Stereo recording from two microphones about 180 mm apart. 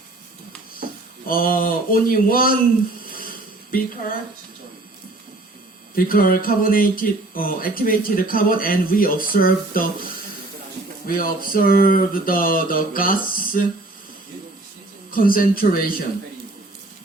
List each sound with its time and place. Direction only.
1.3 s speech: 50° left (ahead or behind)
3.1 s a sound: 55° left (ahead or behind)
5.9 s speech: 55° left (ahead or behind)
11.0 s speech: 50° left (ahead or behind)
15.1 s speech: 50° left (ahead or behind)